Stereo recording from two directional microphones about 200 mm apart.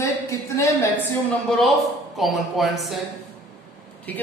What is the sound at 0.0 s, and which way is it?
Speech, 15° left (ahead or behind).